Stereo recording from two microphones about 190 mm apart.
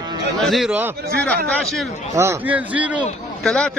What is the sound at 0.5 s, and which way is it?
Speech, centre (ahead or behind).